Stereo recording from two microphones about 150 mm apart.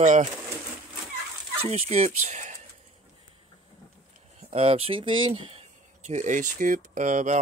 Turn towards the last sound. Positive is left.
turn(degrees=-55)  # may be behind; listen again after turning